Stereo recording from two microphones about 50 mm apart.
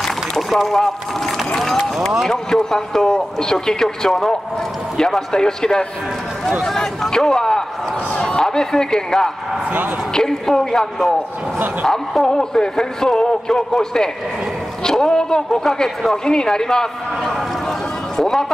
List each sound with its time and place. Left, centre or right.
0.0 s a sound: centre
2.2 s speech: centre
9.7 s a man's voice: right
10.1 s a man's voice: centre